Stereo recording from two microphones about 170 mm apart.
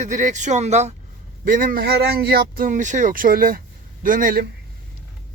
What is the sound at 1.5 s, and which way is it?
Speech, 55° right (ahead or behind).